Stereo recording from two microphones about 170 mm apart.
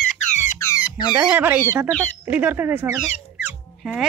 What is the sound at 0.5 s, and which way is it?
Speech, 15° left (ahead or behind).